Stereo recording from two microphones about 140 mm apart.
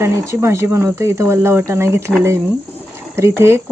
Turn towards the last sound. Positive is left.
turn(degrees=-20)  # may be behind; listen again after turning